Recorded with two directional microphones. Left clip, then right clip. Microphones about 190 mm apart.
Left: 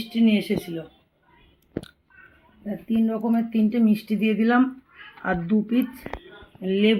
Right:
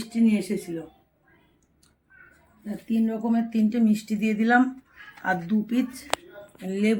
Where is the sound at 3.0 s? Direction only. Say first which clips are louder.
Left 2 dB; 20° left (ahead or behind).